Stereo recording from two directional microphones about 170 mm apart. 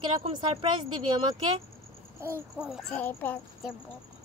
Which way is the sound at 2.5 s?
5° right (ahead or behind).